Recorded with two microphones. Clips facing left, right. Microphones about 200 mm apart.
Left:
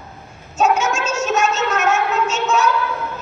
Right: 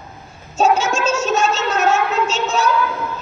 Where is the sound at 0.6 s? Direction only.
30° right (ahead or behind).